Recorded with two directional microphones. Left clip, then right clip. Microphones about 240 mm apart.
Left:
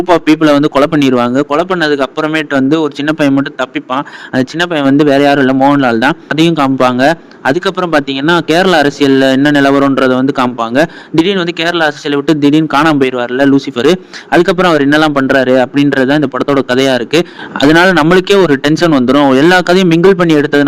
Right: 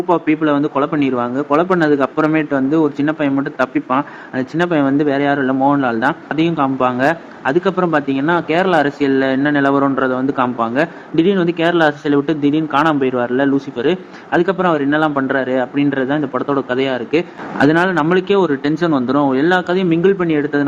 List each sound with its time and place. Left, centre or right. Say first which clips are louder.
0.1 s a man's voice: left 7 dB; left